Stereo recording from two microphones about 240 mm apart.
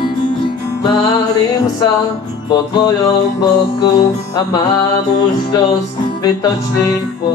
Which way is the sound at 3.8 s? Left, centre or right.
Centre.